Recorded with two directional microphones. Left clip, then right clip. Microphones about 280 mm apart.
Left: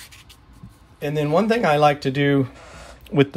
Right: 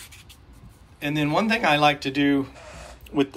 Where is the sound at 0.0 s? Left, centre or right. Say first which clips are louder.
Left 2 dB; centre.